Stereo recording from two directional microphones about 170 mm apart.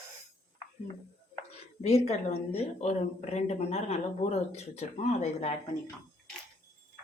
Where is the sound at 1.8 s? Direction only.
40° left (ahead or behind).